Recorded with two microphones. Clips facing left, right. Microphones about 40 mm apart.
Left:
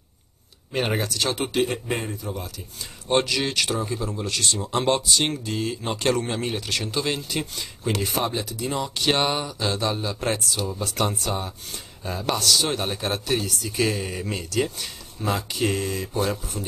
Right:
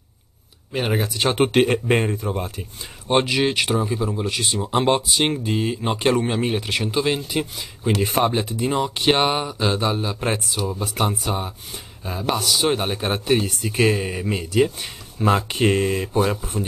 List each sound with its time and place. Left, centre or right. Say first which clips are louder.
0.7 s speech: right 2 dB; centre
1.0 s speech: right 4 dB; right
1.3 s speech: right 9 dB; right
3.1 s speech: right 4 dB; right
8.1 s speech: right 6 dB; right